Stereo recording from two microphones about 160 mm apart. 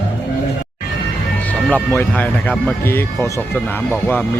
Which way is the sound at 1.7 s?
10° left (ahead or behind).